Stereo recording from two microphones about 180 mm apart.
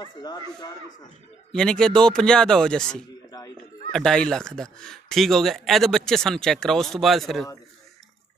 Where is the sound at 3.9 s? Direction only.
5° left (ahead or behind).